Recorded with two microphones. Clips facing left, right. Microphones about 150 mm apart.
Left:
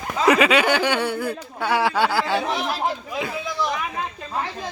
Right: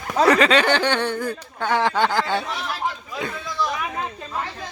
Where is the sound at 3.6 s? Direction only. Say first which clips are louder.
Even; centre (ahead or behind).